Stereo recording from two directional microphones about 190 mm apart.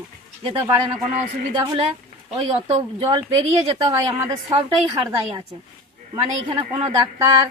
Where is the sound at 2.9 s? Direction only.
25° right (ahead or behind).